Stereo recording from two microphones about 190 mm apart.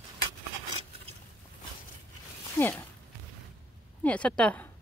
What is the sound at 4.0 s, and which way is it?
Speech, 5° left (ahead or behind).